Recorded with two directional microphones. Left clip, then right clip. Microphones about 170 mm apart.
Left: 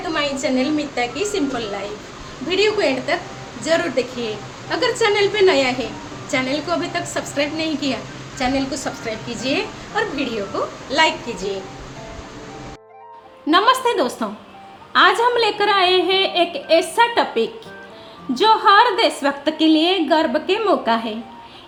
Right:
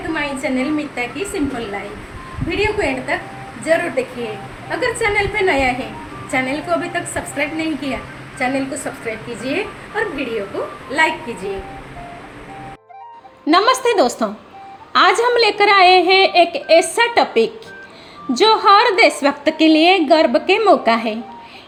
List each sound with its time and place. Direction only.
0.1 s a woman's voice: 5° left (ahead or behind)
13.5 s a woman's voice: 15° right (ahead or behind)